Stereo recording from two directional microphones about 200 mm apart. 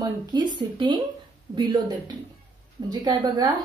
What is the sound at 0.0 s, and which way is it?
A woman's voice, 20° right (ahead or behind).